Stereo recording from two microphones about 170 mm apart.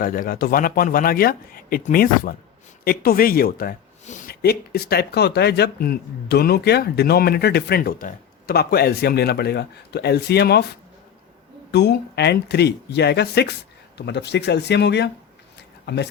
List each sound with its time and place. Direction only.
0.0 s speech: 55° left (ahead or behind); by 10.7 s 70° left (ahead or behind)
11.7 s speech: 80° left